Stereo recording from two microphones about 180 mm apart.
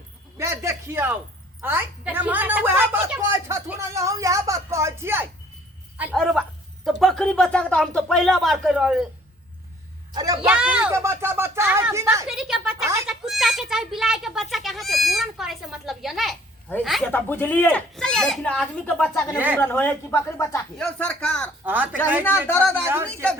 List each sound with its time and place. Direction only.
0.3 s a woman's voice: 15° right (ahead or behind)
6.1 s speech: centre (ahead or behind)
10.1 s a man's voice: 20° right (ahead or behind)
10.4 s a woman's voice: 5° right (ahead or behind)
12.3 s a child's voice: centre (ahead or behind)
21.6 s a woman's voice: 10° right (ahead or behind)
22.2 s a child's voice: 10° left (ahead or behind)